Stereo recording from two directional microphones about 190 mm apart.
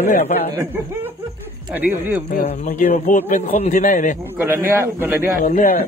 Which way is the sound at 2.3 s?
50° left (ahead or behind).